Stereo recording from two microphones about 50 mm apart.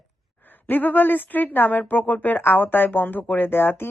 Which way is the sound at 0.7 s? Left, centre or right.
Left.